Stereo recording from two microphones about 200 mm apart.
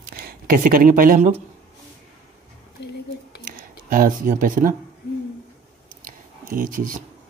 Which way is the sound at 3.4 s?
45° right (ahead or behind).